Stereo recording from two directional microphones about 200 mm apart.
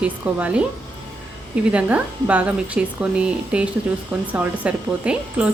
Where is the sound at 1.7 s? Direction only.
5° right (ahead or behind).